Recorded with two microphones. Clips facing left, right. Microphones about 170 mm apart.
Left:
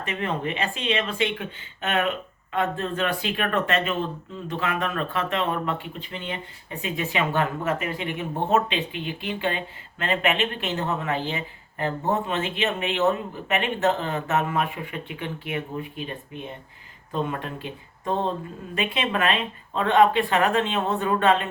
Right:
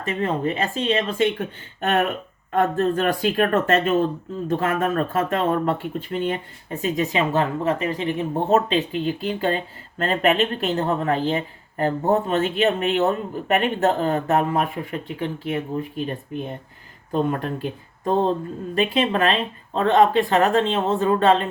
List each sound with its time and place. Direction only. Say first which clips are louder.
0.0 s speech: right 5 dB; 35° right (ahead or behind)
18.0 s speech: right 6 dB; 30° right (ahead or behind)